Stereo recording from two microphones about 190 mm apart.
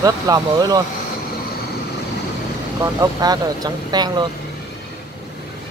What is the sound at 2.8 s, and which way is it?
Speech, 20° right (ahead or behind).